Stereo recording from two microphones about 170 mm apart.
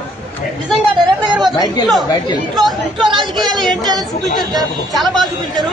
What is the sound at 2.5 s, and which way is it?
Speech, centre (ahead or behind).